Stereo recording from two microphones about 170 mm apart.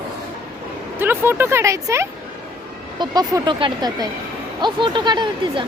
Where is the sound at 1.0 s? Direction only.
15° right (ahead or behind); by 5.7 s 30° right (ahead or behind).